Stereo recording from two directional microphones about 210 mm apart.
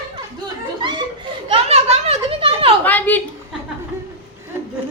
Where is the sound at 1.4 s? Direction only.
25° right (ahead or behind).